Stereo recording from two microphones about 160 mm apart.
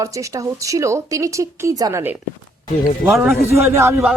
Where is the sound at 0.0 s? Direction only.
20° right (ahead or behind).